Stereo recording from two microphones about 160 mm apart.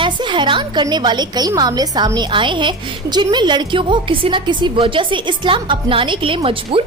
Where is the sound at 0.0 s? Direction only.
30° right (ahead or behind).